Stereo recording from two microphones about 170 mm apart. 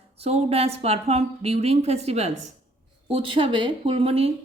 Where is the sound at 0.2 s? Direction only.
35° right (ahead or behind).